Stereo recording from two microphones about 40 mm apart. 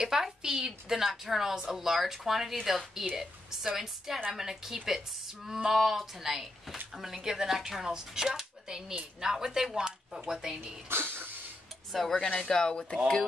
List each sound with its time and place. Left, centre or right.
0.0 s a woman's voice: centre
10.9 s a sound: right
11.9 s speech: centre